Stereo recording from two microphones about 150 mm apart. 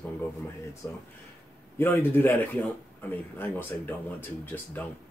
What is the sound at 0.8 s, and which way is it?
A man's voice, 20° left (ahead or behind).